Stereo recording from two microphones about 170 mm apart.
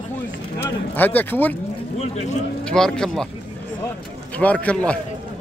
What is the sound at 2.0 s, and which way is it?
Speech, 40° left (ahead or behind).